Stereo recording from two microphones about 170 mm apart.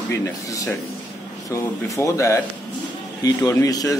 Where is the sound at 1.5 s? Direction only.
15° left (ahead or behind).